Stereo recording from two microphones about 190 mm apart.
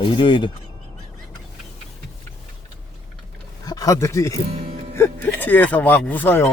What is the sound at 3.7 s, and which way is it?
Speech, 20° left (ahead or behind).